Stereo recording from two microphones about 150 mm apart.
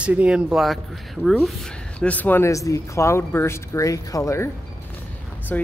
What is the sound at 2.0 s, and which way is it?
Speech, 10° left (ahead or behind).